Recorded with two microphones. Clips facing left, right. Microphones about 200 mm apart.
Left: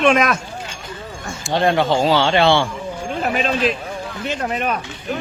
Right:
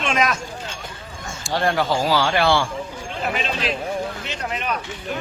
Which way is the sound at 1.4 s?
20° left (ahead or behind).